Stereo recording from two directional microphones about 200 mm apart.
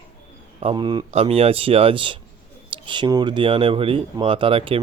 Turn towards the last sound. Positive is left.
turn(degrees=-25)  # may be behind; listen again after turning